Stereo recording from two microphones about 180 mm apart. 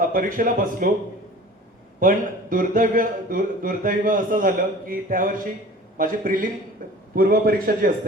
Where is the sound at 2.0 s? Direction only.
50° right (ahead or behind).